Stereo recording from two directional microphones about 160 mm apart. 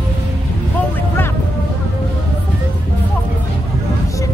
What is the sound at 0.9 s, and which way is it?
Music, 15° left (ahead or behind).